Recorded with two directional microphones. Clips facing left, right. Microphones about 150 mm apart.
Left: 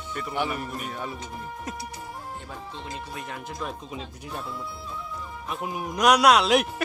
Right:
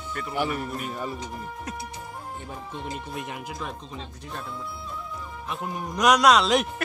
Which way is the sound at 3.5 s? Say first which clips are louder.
Left 1 dB; 5° left (ahead or behind).